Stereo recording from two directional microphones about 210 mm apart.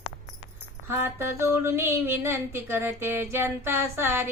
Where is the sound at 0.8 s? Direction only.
10° right (ahead or behind).